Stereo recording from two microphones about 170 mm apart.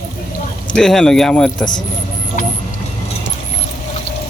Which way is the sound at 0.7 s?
5° left (ahead or behind).